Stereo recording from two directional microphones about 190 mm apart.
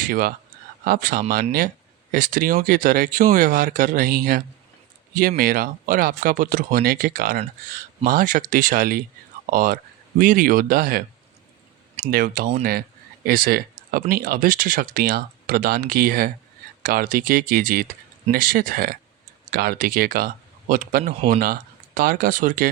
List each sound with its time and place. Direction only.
0.0 s speech: 50° right (ahead or behind)
12.1 s speech: 45° right (ahead or behind)